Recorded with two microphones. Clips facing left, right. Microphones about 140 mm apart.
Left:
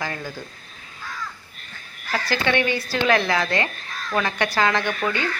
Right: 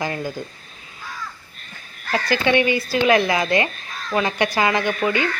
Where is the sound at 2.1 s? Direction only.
15° right (ahead or behind).